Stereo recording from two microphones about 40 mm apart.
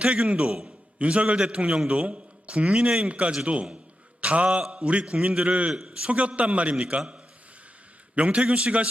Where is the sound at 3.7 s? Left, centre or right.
Right.